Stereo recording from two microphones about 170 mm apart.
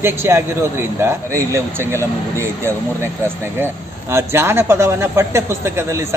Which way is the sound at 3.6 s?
15° right (ahead or behind).